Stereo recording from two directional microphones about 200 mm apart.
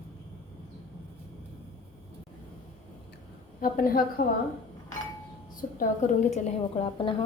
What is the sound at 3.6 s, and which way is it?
Speech, 45° left (ahead or behind).